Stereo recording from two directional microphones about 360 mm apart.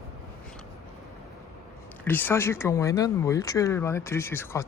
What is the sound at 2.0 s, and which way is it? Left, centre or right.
Speech, centre.